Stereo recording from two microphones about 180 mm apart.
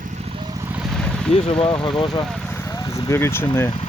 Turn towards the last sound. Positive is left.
turn(degrees=15)  # may be behind; listen again after turning